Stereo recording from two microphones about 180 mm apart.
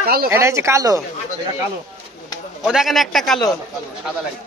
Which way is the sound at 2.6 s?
Centre (ahead or behind).